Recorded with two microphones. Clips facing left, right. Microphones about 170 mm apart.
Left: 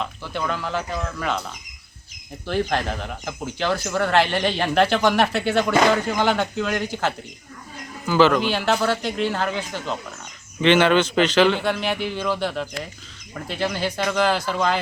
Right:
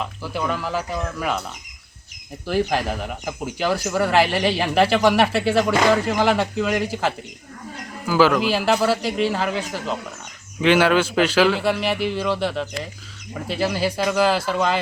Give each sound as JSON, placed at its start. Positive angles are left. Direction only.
{"t": 0.0, "sound": "speech", "side_deg": -5}
{"t": 2.5, "sound": "speech", "side_deg": -5}
{"t": 8.0, "sound": "speech", "side_deg": -5}